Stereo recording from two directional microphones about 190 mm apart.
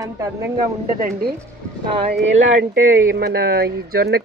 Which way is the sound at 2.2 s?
75° right (ahead or behind).